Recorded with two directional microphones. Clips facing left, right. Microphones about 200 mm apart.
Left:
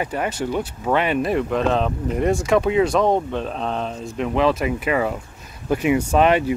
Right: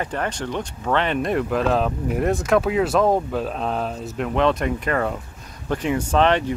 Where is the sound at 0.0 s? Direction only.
10° left (ahead or behind).